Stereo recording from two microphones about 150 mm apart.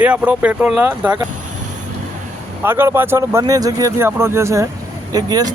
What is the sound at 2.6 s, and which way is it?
Speech, 15° right (ahead or behind).